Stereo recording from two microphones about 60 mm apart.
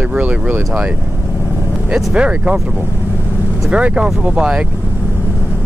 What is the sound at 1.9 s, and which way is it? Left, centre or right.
Speech, centre.